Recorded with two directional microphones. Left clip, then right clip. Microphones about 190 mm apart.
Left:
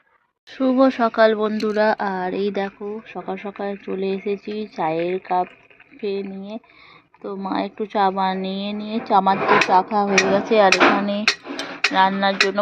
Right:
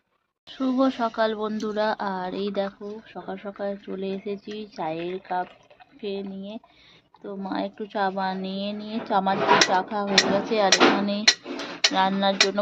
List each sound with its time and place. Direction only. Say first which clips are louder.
0.5 s speech: left 7 dB; 20° left (ahead or behind)